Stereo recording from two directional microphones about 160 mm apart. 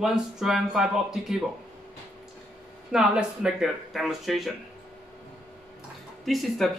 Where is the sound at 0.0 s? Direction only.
5° right (ahead or behind).